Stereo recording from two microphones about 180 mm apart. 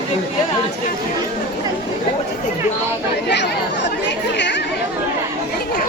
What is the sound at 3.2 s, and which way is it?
Chatter, 75° left (ahead or behind).